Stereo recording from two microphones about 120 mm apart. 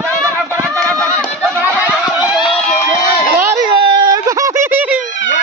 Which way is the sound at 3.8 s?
40° right (ahead or behind).